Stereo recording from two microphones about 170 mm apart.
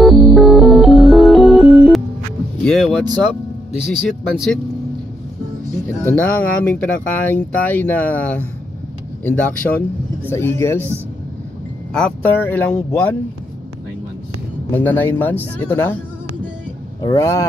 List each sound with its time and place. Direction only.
0.0 s music: centre (ahead or behind)
2.6 s speech: centre (ahead or behind)
4.2 s speech: 5° left (ahead or behind)
6.0 s speech: 10° left (ahead or behind)
11.9 s speech: 5° left (ahead or behind)
14.7 s speech: 10° left (ahead or behind)
17.0 s speech: 20° left (ahead or behind)